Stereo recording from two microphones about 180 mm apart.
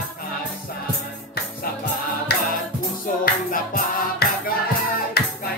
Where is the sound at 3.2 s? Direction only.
55° left (ahead or behind).